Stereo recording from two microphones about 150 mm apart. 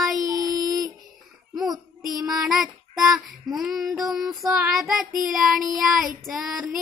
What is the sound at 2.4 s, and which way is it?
Child singing, centre (ahead or behind).